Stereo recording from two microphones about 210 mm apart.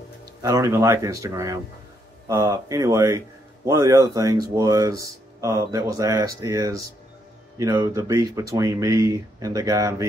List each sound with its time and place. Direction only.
0.4 s speech: 15° right (ahead or behind)